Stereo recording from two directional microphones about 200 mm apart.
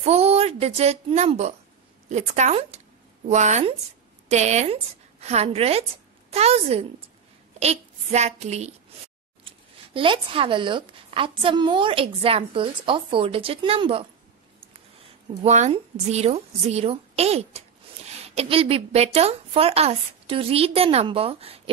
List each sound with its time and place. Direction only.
0.0 s a child's voice: 30° right (ahead or behind)
9.9 s a woman's voice: 25° right (ahead or behind)
15.4 s a woman's voice: 35° right (ahead or behind)